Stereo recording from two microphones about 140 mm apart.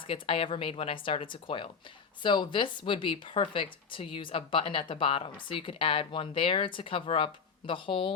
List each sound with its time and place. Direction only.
0.1 s speech: 40° left (ahead or behind)